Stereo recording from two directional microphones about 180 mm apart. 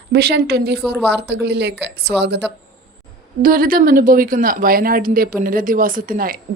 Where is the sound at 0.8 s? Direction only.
Centre (ahead or behind).